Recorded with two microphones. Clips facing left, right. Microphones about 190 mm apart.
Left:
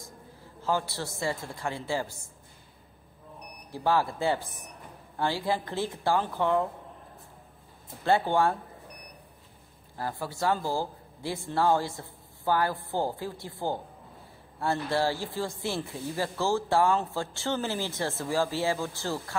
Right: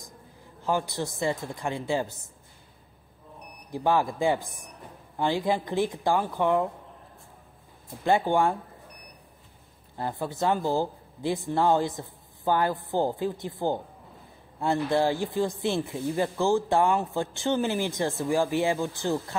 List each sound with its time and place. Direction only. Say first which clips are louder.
0.6 s speech: right 2 dB; 15° right (ahead or behind)
3.7 s speech: right 2 dB; 15° right (ahead or behind)
8.0 s speech: right 1 dB; 15° right (ahead or behind)
9.9 s speech: right 3 dB; 20° right (ahead or behind)